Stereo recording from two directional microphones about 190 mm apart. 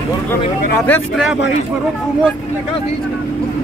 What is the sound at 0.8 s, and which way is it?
Speech, 5° left (ahead or behind).